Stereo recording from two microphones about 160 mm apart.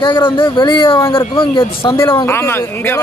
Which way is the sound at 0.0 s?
30° left (ahead or behind).